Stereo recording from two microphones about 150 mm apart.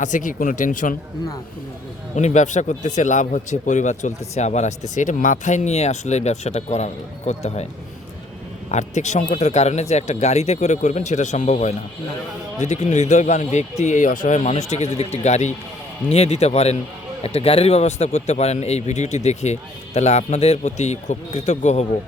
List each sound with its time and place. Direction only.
0.0 s speech: 60° left (ahead or behind)
2.1 s speech: 50° left (ahead or behind)
8.7 s speech: 50° left (ahead or behind)